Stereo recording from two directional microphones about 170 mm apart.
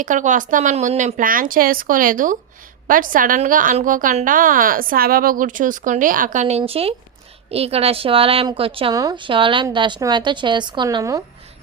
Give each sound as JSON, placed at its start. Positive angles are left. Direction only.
{"t": 0.0, "sound": "a woman's voice", "side_deg": -50}